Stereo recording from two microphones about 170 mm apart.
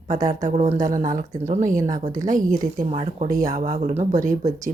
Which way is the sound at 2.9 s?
40° right (ahead or behind).